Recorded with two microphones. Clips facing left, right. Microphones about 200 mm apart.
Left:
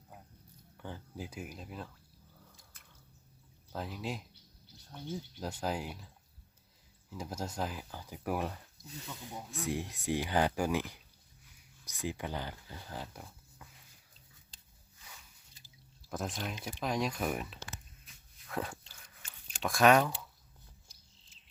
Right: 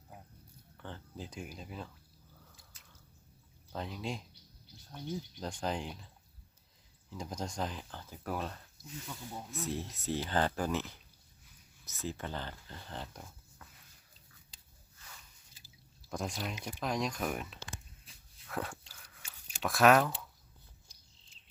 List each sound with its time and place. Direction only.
0.8 s speech: 10° left (ahead or behind)
2.8 s drip: 55° left (ahead or behind)
3.7 s speech: 5° left (ahead or behind)
5.4 s speech: 5° left (ahead or behind)
7.1 s speech: 5° left (ahead or behind)
15.5 s speech: centre (ahead or behind)
18.1 s a sound: 30° right (ahead or behind)
18.4 s biting: centre (ahead or behind)
19.2 s a sound: 5° right (ahead or behind)